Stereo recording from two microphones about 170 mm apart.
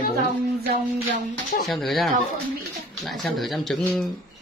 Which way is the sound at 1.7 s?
Centre (ahead or behind).